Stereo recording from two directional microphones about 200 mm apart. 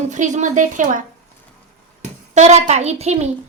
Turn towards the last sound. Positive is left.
turn(degrees=-35)  # may be behind; listen again after turning